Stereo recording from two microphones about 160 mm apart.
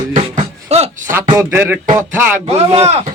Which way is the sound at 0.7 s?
40° right (ahead or behind).